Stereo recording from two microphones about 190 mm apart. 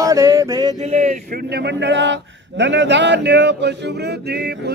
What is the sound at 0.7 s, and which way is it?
Speech, 40° right (ahead or behind).